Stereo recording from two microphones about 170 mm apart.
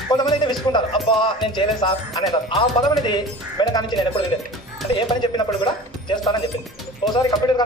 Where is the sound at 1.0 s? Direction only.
30° left (ahead or behind).